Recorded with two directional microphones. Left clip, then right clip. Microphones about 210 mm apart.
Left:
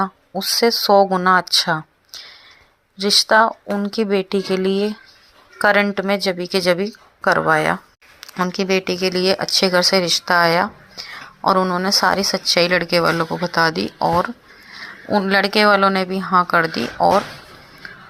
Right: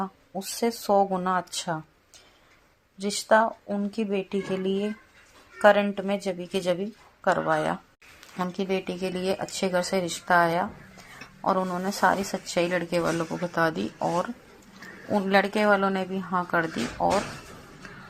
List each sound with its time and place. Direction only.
0.0 s speech: 20° left (ahead or behind)
3.0 s speech: 20° left (ahead or behind)